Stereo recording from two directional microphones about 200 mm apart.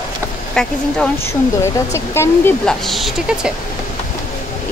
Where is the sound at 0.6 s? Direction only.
5° left (ahead or behind).